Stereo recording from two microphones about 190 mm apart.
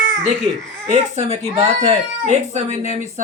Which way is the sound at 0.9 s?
35° right (ahead or behind).